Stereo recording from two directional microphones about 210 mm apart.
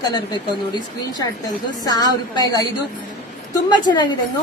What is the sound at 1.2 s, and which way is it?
A woman's voice, 20° left (ahead or behind).